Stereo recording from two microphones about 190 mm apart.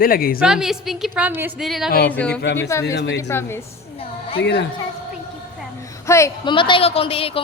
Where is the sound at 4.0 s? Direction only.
30° left (ahead or behind).